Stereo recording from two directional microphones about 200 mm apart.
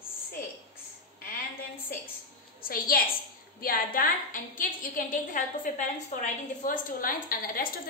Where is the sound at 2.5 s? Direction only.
45° left (ahead or behind).